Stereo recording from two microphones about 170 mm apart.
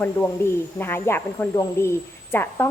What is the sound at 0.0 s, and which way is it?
Speech, 10° left (ahead or behind).